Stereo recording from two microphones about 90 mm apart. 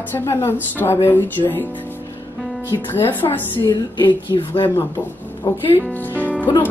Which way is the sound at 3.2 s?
55° left (ahead or behind).